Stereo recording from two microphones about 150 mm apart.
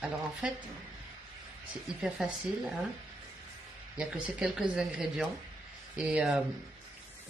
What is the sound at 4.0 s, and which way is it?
Speech, 5° right (ahead or behind).